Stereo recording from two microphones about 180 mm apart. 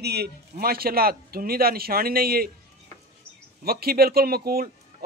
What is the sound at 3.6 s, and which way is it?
A man's voice, 60° right (ahead or behind).